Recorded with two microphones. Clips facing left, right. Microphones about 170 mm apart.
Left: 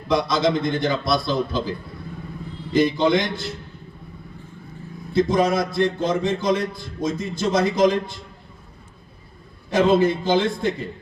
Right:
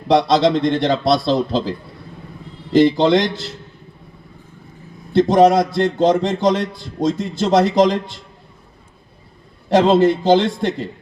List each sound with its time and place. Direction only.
0.1 s a man's voice: 80° right
2.7 s a man's voice: 85° right
5.1 s a man's voice: 80° right
9.6 s a man's voice: 80° right